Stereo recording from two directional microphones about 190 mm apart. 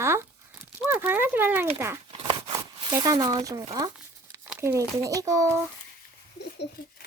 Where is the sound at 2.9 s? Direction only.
20° right (ahead or behind).